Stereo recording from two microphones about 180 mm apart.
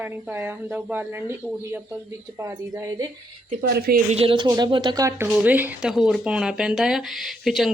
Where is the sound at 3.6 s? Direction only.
55° right (ahead or behind).